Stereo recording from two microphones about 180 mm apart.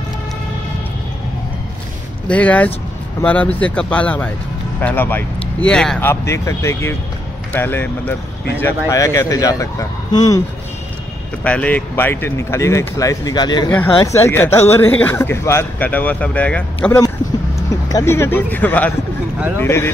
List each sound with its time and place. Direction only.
2.2 s speech: 10° left (ahead or behind)
11.4 s speech: 5° left (ahead or behind)